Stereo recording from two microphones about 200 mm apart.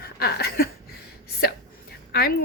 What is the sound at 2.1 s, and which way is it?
Speech, 50° left (ahead or behind).